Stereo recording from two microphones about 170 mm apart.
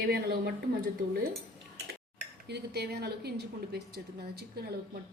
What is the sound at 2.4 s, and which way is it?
Speech, 75° right (ahead or behind).